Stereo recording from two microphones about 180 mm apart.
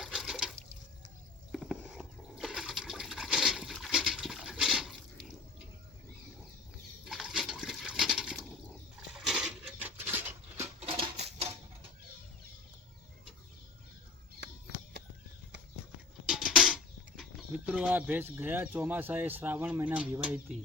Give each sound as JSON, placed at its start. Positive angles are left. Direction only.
{"t": 0.0, "sound": "water", "side_deg": 0}
{"t": 1.5, "sound": "toothbrush", "side_deg": 0}
{"t": 7.0, "sound": "a sound", "side_deg": 0}
{"t": 10.8, "sound": "sewing machine", "side_deg": -35}
{"t": 14.4, "sound": "a sound", "side_deg": -70}
{"t": 16.2, "sound": "music", "side_deg": 0}
{"t": 17.7, "sound": "speech", "side_deg": -5}